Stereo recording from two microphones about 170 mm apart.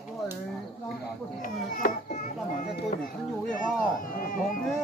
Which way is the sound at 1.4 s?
55° left (ahead or behind).